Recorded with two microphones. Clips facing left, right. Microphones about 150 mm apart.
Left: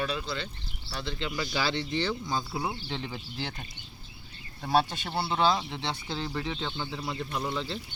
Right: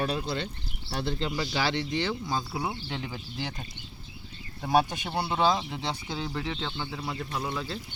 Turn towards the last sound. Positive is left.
turn(degrees=-5)  # may be behind; listen again after turning